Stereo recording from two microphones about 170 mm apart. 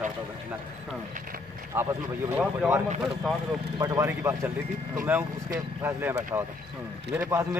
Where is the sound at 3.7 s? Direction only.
20° right (ahead or behind).